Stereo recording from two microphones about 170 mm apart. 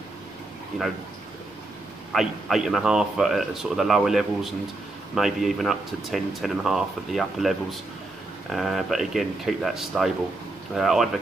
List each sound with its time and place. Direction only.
2.1 s speech: centre (ahead or behind)